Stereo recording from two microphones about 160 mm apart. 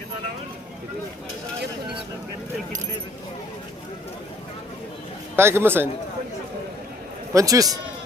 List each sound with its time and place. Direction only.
5.4 s speech: 15° right (ahead or behind)
7.3 s a man's voice: 20° right (ahead or behind)